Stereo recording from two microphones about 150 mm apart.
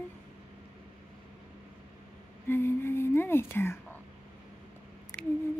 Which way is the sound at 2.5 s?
15° left (ahead or behind).